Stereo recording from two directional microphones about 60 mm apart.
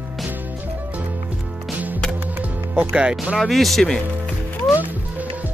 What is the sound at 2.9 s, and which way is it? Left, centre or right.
Speech, centre.